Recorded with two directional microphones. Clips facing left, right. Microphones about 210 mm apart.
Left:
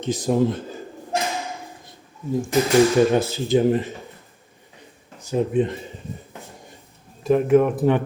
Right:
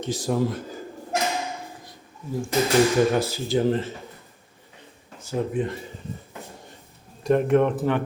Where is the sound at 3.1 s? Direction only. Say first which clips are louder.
Left 4 dB; 25° left (ahead or behind).